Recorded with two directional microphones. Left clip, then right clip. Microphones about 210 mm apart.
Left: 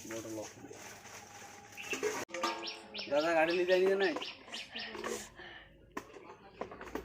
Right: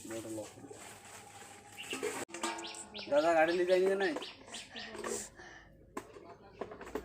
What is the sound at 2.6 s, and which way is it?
Speech, 5° left (ahead or behind).